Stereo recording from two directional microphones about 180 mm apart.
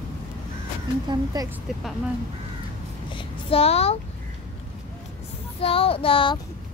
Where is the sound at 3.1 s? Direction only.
30° left (ahead or behind).